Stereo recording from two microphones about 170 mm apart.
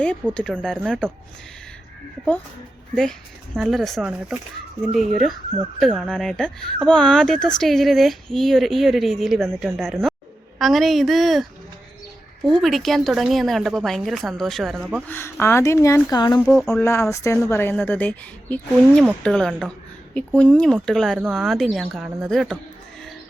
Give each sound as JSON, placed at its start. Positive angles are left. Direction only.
{"t": 0.3, "sound": "speech", "side_deg": 5}
{"t": 2.9, "sound": "speech", "side_deg": 5}
{"t": 12.6, "sound": "speech", "side_deg": 0}
{"t": 15.0, "sound": "speech", "side_deg": 15}
{"t": 16.4, "sound": "speech", "side_deg": 10}